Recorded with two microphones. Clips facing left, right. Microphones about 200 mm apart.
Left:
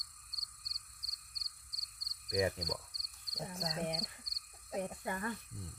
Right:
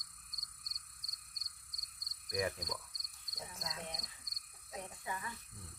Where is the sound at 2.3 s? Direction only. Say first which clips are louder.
Left 4 dB; 20° left (ahead or behind).